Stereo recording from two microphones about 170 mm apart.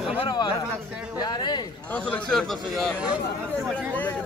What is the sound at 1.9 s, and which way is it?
Speech, 5° left (ahead or behind).